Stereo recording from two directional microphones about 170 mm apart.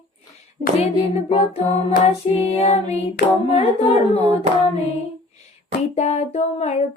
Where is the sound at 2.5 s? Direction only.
35° left (ahead or behind).